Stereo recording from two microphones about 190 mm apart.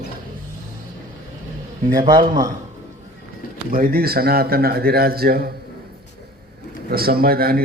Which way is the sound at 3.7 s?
50° right (ahead or behind).